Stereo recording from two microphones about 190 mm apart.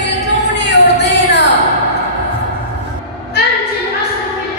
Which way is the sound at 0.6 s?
65° left (ahead or behind).